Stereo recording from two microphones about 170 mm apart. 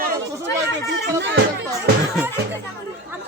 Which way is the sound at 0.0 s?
90° right.